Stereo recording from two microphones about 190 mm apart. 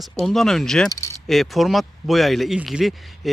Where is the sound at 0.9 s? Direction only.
15° left (ahead or behind).